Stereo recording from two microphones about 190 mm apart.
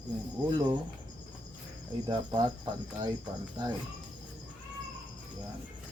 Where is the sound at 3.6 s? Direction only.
20° right (ahead or behind).